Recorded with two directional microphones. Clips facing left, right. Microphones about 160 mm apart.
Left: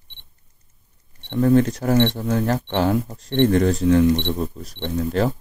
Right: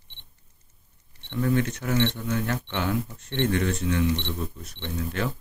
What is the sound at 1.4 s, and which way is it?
Speech, 35° left (ahead or behind).